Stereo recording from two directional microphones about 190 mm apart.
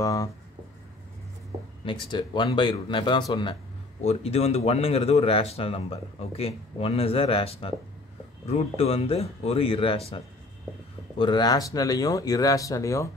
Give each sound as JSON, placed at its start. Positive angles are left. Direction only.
{"t": 0.0, "sound": "speech", "side_deg": 20}
{"t": 1.9, "sound": "speech", "side_deg": 25}